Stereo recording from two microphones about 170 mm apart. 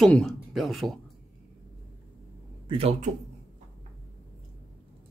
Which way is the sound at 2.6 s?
35° right (ahead or behind).